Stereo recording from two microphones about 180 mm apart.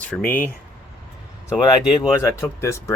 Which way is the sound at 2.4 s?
15° left (ahead or behind).